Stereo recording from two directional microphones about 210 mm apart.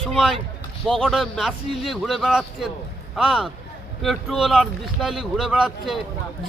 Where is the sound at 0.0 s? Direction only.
Centre (ahead or behind).